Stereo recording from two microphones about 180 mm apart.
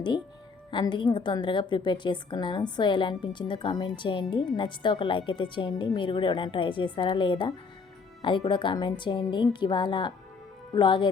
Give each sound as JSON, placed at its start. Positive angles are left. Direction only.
{"t": 0.7, "sound": "a woman's voice", "side_deg": 25}